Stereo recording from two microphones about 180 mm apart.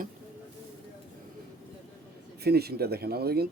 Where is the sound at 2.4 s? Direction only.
60° right (ahead or behind).